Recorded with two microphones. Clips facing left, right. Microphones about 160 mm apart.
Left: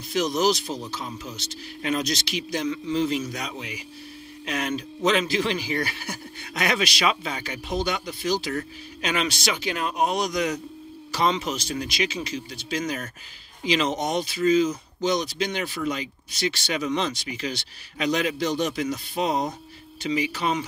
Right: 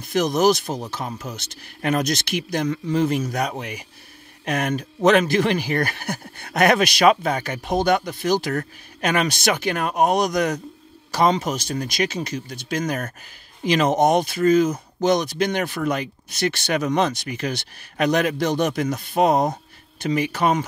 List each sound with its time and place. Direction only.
0.1 s speech: 50° right (ahead or behind)